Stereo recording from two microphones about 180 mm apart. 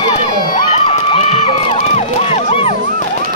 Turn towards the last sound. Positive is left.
turn(degrees=35)  # may be behind; listen again after turning